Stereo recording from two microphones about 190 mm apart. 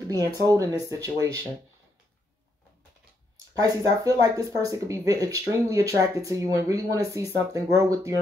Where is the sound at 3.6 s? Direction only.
20° right (ahead or behind).